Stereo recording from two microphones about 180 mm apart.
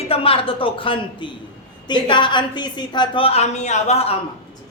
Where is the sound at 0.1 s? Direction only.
30° left (ahead or behind).